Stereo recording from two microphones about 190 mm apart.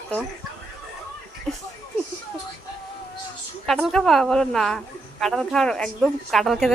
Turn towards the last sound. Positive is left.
turn(degrees=0)  # may be behind; listen again after turning